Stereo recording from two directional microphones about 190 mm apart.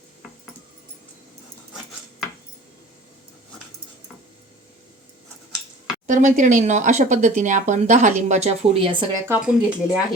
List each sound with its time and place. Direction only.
6.1 s speech: 40° right (ahead or behind)
9.5 s speech: 5° right (ahead or behind)